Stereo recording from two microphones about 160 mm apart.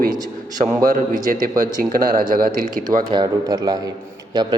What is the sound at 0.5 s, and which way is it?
Speech, 55° right (ahead or behind).